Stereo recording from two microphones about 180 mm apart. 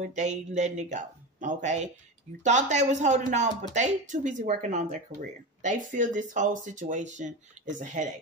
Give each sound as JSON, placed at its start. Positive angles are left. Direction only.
{"t": 0.0, "sound": "speech", "side_deg": -40}